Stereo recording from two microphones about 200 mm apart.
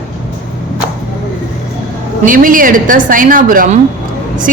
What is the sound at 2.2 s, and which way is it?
A man's voice, 45° right (ahead or behind).